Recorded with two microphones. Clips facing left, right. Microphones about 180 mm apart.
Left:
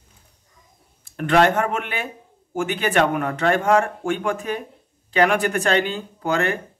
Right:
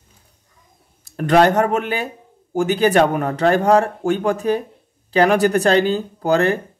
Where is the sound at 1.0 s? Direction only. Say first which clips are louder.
Right 3 dB; 40° right (ahead or behind).